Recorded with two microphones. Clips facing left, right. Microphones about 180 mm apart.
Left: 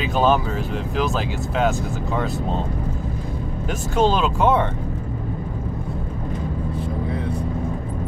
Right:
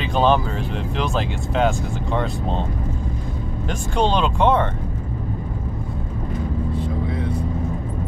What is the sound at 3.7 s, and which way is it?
Speech, 5° left (ahead or behind).